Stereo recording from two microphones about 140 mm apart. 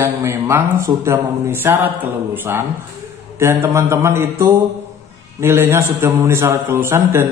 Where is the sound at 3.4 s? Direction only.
20° right (ahead or behind).